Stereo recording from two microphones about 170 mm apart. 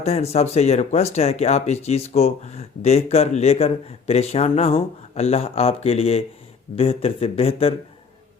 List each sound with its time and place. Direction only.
0.0 s speech: 40° left (ahead or behind)